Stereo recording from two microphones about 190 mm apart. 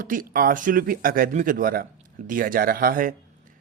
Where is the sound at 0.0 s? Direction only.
45° right (ahead or behind).